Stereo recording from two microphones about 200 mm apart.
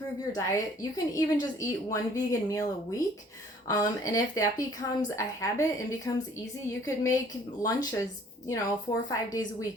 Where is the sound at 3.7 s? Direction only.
20° left (ahead or behind).